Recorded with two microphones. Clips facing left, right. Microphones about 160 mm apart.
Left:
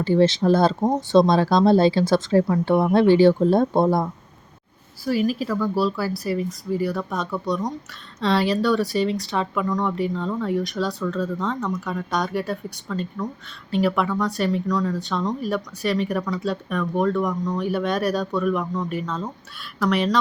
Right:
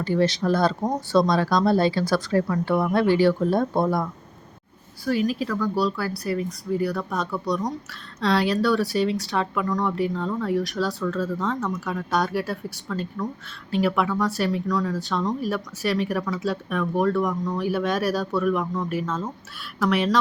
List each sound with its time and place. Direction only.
0.0 s speech: 25° left (ahead or behind)
5.0 s speech: 5° left (ahead or behind)